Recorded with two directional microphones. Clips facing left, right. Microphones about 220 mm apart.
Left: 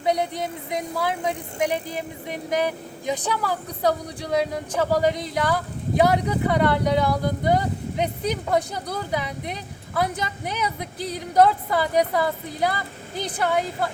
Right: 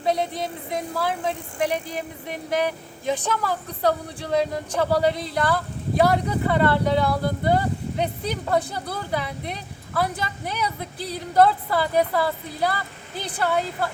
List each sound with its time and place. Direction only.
0.0 s speech: 15° left (ahead or behind)